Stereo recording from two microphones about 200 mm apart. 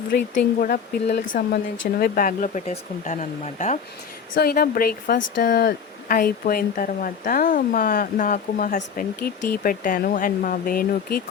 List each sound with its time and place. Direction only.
0.3 s speech: 40° left (ahead or behind)
4.4 s speech: 50° left (ahead or behind)